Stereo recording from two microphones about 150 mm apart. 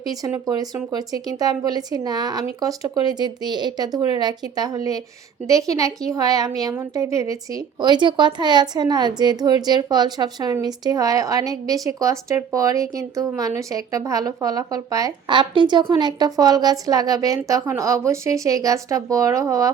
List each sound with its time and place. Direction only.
0.1 s a woman's voice: 25° right (ahead or behind)